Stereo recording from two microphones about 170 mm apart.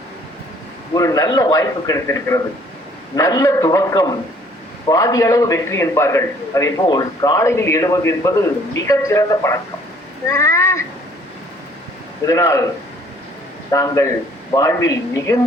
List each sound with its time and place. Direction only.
0.9 s a man's voice: 20° left (ahead or behind)
12.2 s a man's voice: 20° left (ahead or behind)
13.7 s a man's voice: 20° left (ahead or behind)